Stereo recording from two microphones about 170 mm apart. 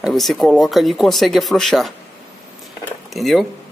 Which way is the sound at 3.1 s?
Centre (ahead or behind).